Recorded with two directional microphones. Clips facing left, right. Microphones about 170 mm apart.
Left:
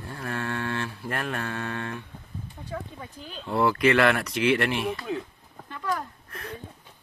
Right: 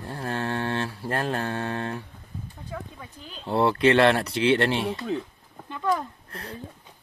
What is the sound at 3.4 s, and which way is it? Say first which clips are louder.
Speech: right 2 dB; 30° right (ahead or behind).